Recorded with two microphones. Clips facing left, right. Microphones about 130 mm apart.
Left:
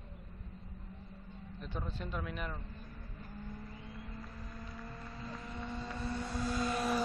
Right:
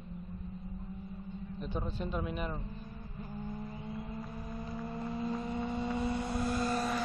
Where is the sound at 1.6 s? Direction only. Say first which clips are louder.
Right 5 dB; 15° right (ahead or behind).